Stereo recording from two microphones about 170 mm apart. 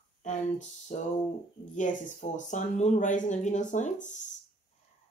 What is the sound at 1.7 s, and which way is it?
Speech, 45° left (ahead or behind).